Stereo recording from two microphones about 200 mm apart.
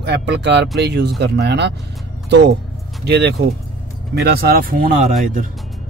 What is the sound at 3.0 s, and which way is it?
Speech, 55° right (ahead or behind).